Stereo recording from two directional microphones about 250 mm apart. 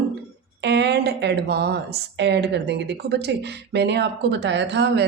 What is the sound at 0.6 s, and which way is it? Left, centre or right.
Speech, right.